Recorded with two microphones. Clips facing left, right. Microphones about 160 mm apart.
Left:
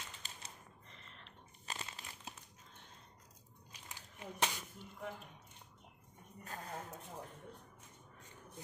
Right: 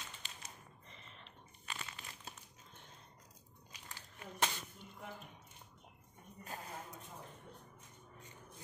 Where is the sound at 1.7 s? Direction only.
40° left (ahead or behind).